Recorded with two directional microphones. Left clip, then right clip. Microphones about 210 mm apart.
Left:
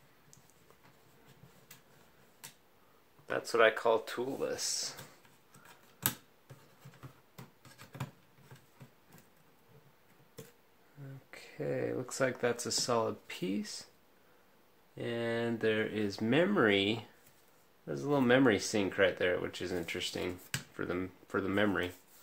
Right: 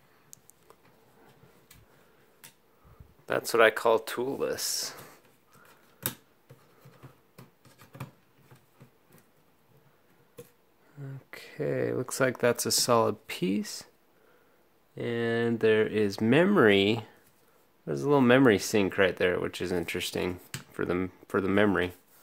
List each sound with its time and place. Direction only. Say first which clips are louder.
3.3 s speech: right 5 dB; 45° right (ahead or behind)
7.3 s a sound: even; centre (ahead or behind)
11.0 s speech: right 6 dB; 45° right (ahead or behind)
15.0 s speech: right 6 dB; 50° right (ahead or behind)